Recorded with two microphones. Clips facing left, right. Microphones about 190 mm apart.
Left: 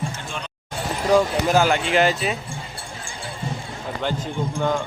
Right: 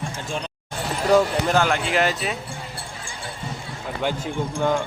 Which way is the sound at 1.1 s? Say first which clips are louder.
Left 1 dB; 5° left (ahead or behind).